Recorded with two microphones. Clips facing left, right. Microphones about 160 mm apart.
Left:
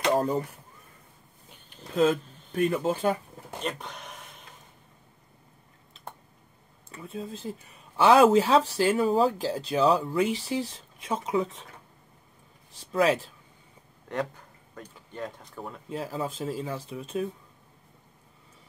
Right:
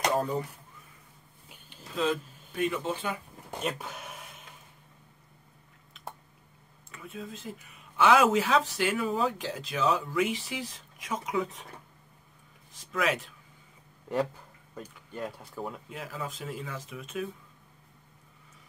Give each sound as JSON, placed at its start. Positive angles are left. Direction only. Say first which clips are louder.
{"t": 2.0, "sound": "speech", "louder": "left 6 dB", "side_deg": 40}
{"t": 3.5, "sound": "speech", "louder": "even", "side_deg": -5}
{"t": 6.9, "sound": "speech", "louder": "left 4 dB", "side_deg": 30}
{"t": 12.7, "sound": "speech", "louder": "left 6 dB", "side_deg": 30}
{"t": 14.1, "sound": "speech", "louder": "right 2 dB", "side_deg": -5}
{"t": 15.9, "sound": "speech", "louder": "left 6 dB", "side_deg": 30}